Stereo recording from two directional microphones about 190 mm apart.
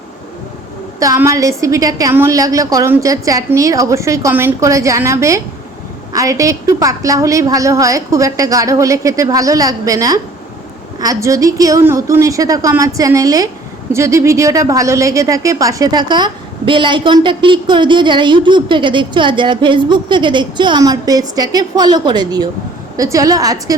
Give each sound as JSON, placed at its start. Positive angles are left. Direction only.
{"t": 0.9, "sound": "a woman's voice", "side_deg": -15}